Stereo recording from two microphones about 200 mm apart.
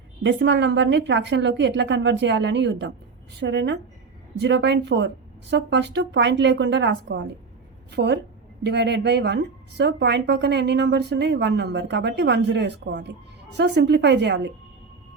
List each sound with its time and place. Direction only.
0.2 s speech: 60° right (ahead or behind)